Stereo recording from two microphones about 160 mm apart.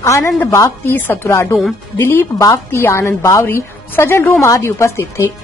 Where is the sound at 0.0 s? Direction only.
20° left (ahead or behind).